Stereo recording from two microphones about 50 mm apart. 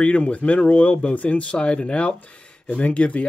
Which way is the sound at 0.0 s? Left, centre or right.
Left.